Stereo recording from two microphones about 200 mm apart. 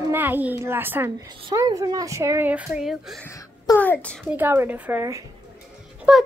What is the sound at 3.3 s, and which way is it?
Speech, 15° left (ahead or behind).